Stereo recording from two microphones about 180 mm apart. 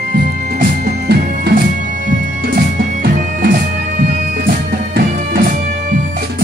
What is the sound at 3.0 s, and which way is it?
Music, 55° right (ahead or behind).